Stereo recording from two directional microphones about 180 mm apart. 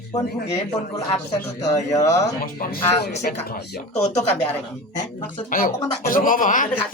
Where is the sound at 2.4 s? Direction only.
55° left (ahead or behind).